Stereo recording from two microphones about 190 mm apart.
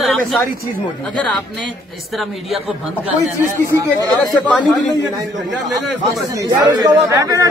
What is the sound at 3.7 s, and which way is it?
Speech, 15° right (ahead or behind).